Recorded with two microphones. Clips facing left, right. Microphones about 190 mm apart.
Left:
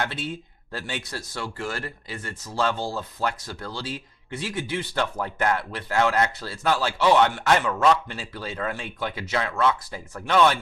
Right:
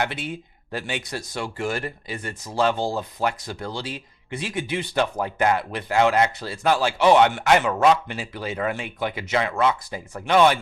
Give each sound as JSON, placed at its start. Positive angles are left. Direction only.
{"t": 0.0, "sound": "speech", "side_deg": -15}